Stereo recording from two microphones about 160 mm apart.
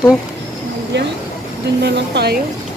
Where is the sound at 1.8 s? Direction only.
90° right.